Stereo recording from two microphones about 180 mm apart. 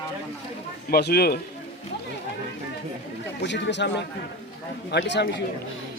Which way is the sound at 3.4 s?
75° left (ahead or behind).